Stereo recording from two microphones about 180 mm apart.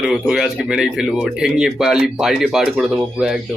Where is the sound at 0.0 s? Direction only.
5° right (ahead or behind).